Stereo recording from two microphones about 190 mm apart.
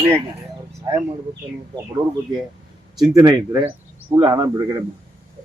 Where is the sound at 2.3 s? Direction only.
25° right (ahead or behind).